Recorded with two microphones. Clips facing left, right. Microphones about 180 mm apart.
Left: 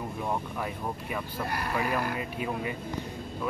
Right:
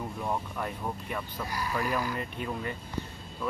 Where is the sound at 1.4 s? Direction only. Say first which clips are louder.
Left 2 dB; 60° left (ahead or behind).